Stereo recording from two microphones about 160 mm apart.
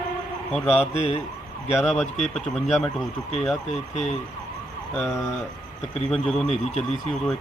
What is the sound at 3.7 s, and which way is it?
Speech, 45° left (ahead or behind).